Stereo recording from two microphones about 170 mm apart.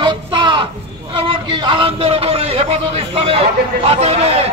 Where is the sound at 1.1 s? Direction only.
30° right (ahead or behind).